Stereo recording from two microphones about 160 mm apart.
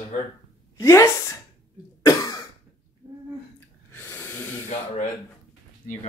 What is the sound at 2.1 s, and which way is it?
Cough, 20° left (ahead or behind).